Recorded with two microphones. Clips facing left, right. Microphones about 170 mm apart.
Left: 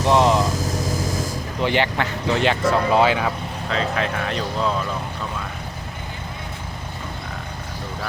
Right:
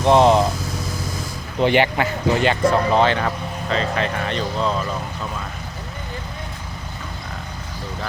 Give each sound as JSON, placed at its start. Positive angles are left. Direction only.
{"t": 0.1, "sound": "vehicle", "side_deg": -35}
{"t": 0.5, "sound": "vehicle", "side_deg": 40}
{"t": 1.6, "sound": "speech", "side_deg": -15}